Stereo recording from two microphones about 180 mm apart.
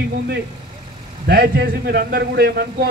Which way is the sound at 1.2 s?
65° right (ahead or behind).